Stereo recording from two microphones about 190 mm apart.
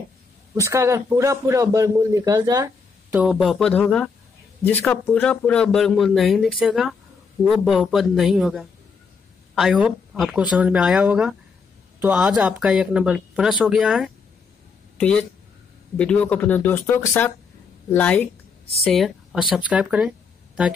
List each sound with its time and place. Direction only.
0.6 s a man's voice: 15° right (ahead or behind)
3.1 s speech: 5° right (ahead or behind)